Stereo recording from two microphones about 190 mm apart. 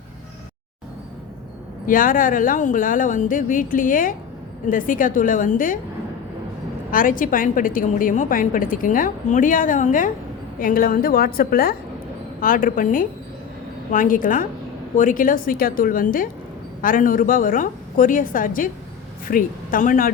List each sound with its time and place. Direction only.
1.9 s a woman's voice: 45° left (ahead or behind)
6.9 s a woman's voice: 45° left (ahead or behind)